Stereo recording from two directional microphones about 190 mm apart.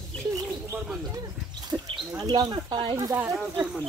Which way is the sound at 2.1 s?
20° right (ahead or behind).